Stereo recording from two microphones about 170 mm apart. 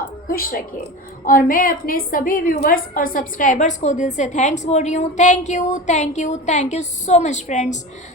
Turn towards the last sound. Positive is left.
turn(degrees=45)  # may be behind; listen again after turning